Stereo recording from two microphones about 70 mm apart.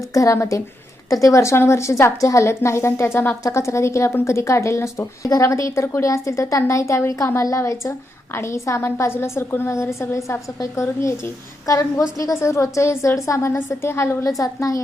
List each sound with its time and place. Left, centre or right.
0.1 s a woman's voice: left
14.3 s a woman's voice: left